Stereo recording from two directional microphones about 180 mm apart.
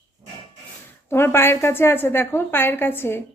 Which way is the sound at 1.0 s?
15° left (ahead or behind).